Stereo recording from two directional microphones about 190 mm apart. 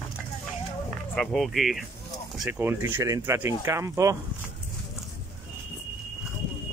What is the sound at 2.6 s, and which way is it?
Speech, 10° right (ahead or behind).